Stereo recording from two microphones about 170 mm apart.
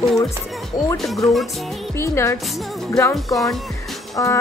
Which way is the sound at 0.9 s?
Centre (ahead or behind).